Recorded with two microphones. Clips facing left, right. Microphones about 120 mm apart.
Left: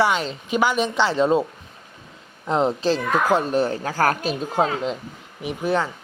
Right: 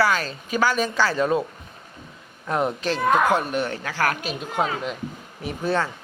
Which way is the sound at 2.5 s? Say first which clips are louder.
Left 4 dB; 25° left (ahead or behind).